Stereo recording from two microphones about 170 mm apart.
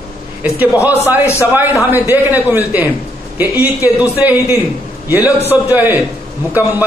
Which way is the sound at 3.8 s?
10° right (ahead or behind).